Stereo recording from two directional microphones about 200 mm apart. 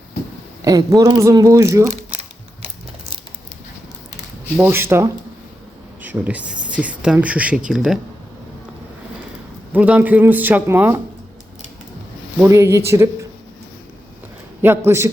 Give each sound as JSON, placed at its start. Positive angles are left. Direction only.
{"t": 0.6, "sound": "speech", "side_deg": -15}
{"t": 4.5, "sound": "speech", "side_deg": -10}
{"t": 9.7, "sound": "speech", "side_deg": -10}
{"t": 12.4, "sound": "speech", "side_deg": -15}
{"t": 14.8, "sound": "speech", "side_deg": -10}